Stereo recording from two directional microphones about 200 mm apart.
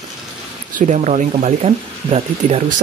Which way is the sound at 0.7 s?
35° right (ahead or behind).